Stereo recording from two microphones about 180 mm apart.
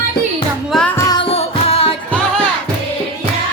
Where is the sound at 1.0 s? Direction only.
30° left (ahead or behind).